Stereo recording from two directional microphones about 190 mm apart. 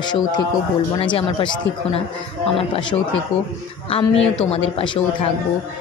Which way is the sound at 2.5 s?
30° left (ahead or behind).